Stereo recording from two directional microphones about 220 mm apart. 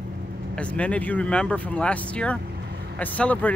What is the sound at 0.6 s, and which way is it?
Speech, 5° left (ahead or behind).